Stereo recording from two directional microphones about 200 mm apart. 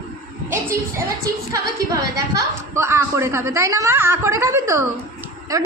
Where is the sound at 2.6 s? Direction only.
15° right (ahead or behind).